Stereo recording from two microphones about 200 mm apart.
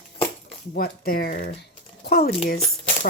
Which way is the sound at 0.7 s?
50° left (ahead or behind).